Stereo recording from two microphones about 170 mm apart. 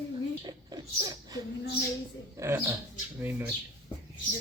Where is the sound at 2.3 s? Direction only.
15° right (ahead or behind).